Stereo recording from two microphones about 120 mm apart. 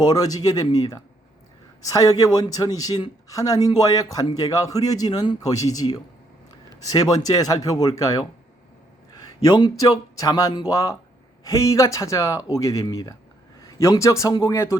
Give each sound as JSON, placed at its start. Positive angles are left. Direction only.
{"t": 0.0, "sound": "speech", "side_deg": 30}
{"t": 9.4, "sound": "a man's voice", "side_deg": 35}